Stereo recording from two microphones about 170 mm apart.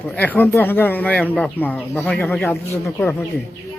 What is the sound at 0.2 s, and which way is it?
Speech, 10° left (ahead or behind).